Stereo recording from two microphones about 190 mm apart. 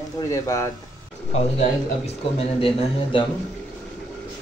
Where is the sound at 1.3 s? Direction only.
35° left (ahead or behind).